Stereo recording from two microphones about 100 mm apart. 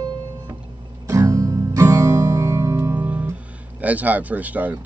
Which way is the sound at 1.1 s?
30° right (ahead or behind).